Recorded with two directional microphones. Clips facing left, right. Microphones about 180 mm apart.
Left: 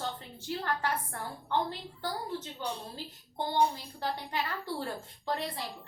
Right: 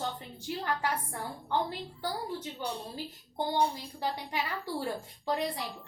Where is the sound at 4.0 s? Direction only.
10° right (ahead or behind).